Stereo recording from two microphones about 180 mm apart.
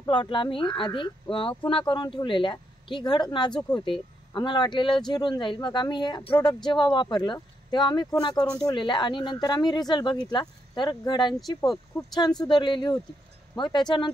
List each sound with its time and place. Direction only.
0.0 s speech: 25° left (ahead or behind)